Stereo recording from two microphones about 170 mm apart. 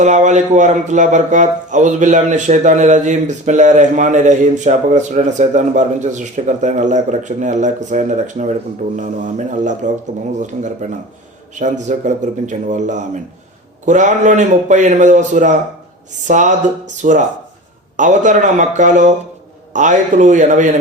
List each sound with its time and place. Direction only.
0.0 s a man's voice: 45° right (ahead or behind)